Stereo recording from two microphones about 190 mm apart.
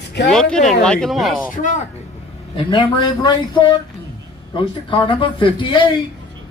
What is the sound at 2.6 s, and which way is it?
A man's voice, 25° left (ahead or behind).